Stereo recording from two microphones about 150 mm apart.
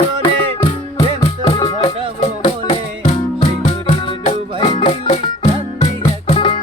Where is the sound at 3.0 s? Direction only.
50° left (ahead or behind); by 6.6 s 35° left (ahead or behind).